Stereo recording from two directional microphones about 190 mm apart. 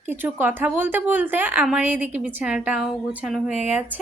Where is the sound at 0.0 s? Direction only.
10° right (ahead or behind).